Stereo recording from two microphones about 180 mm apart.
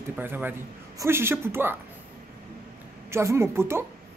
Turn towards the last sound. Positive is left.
turn(degrees=-15)  # may be behind; listen again after turning